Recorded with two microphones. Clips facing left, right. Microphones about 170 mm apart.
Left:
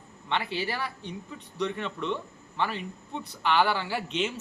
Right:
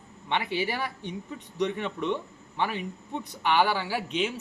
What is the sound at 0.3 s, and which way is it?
A man's voice, 15° right (ahead or behind).